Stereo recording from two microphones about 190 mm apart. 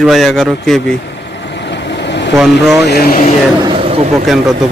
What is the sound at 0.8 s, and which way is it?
Vehicle, 65° left (ahead or behind).